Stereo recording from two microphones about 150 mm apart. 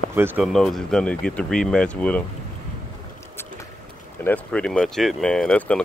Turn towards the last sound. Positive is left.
turn(degrees=10)  # may be behind; listen again after turning